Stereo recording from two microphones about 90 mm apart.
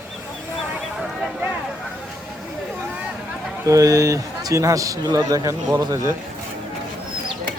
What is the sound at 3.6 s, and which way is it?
A man's voice, 40° right (ahead or behind).